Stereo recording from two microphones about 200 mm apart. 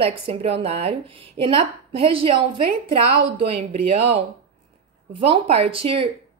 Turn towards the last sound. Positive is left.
turn(degrees=-30)  # may be behind; listen again after turning